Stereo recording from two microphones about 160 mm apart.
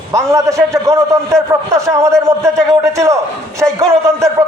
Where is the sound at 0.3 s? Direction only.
20° right (ahead or behind).